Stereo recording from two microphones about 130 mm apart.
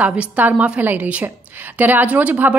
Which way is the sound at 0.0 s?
10° right (ahead or behind).